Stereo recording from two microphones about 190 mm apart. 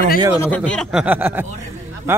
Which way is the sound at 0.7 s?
Centre (ahead or behind).